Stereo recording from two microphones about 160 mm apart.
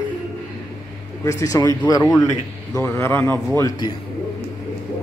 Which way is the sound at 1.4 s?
20° left (ahead or behind).